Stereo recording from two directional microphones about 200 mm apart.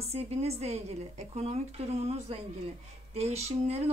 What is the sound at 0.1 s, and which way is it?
Speech, 30° right (ahead or behind).